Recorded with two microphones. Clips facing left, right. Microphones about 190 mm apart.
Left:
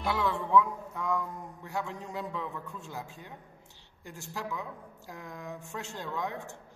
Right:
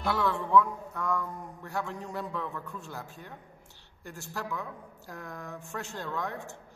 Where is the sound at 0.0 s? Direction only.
15° left (ahead or behind).